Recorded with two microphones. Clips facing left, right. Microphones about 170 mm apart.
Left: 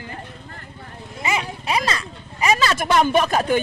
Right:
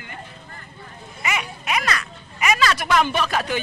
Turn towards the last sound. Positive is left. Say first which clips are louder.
# left 5 dB
turn(degrees=45)  # may be behind; listen again after turning